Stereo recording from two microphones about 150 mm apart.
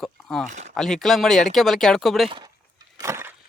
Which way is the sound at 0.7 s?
5° left (ahead or behind).